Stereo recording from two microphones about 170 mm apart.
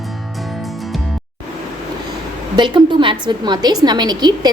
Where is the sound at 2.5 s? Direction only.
30° right (ahead or behind).